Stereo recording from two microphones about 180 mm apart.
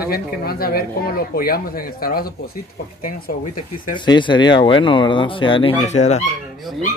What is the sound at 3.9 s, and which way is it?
Speech, 25° left (ahead or behind).